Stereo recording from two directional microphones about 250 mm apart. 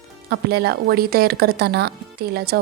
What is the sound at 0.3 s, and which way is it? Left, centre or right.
A woman's voice, right.